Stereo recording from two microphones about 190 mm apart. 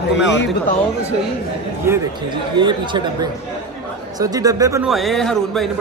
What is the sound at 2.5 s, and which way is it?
Speech, 25° right (ahead or behind).